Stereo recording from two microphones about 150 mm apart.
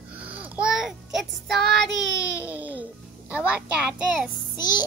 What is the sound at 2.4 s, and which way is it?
Music, 10° right (ahead or behind).